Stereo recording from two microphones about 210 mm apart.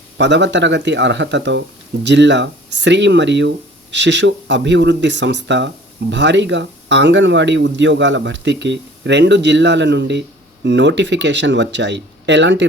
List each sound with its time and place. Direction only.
0.2 s speech: 55° right (ahead or behind)